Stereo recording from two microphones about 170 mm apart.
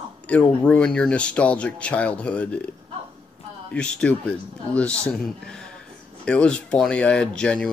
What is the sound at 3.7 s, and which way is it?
A man's voice, 5° left (ahead or behind).